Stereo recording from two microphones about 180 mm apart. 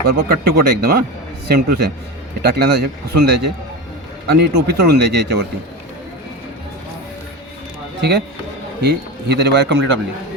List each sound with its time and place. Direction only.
0.1 s a man's voice: 60° right (ahead or behind)
8.8 s speech: 70° right (ahead or behind)